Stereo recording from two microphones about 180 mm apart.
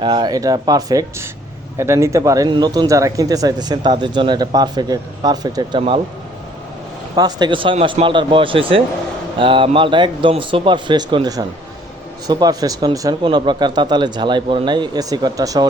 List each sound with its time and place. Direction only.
0.0 s speech: 25° right (ahead or behind)
7.2 s speech: 20° right (ahead or behind)